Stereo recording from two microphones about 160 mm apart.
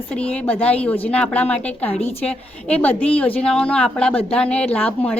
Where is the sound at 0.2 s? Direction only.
10° left (ahead or behind).